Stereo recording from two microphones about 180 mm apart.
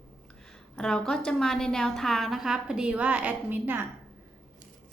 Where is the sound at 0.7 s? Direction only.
5° left (ahead or behind).